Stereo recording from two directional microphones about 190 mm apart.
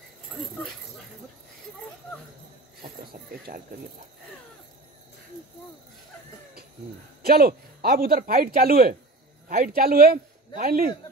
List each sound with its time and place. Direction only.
2.8 s snake: 55° right (ahead or behind)
7.2 s speech: 55° right (ahead or behind)